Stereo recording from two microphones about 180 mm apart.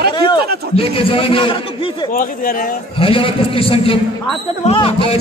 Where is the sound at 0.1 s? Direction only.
25° left (ahead or behind).